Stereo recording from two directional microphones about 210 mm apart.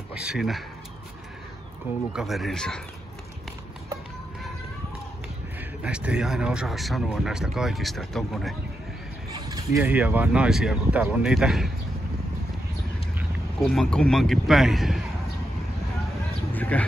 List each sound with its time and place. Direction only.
0.1 s speech: 5° right (ahead or behind)
2.1 s speech: centre (ahead or behind)
5.6 s speech: 5° right (ahead or behind)
9.3 s a sound: 20° right (ahead or behind)
9.8 s speech: 5° right (ahead or behind)
13.6 s speech: 5° left (ahead or behind)
16.5 s a sound: 10° left (ahead or behind)